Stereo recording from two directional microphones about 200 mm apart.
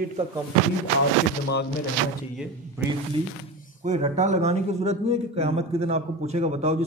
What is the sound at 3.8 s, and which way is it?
A man's voice, 35° right (ahead or behind).